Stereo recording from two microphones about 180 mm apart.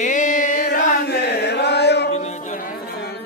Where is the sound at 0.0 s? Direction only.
45° left (ahead or behind); by 2.0 s 70° left (ahead or behind).